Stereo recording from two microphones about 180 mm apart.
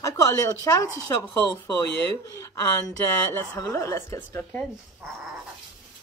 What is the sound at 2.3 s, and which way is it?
Speech, 15° left (ahead or behind).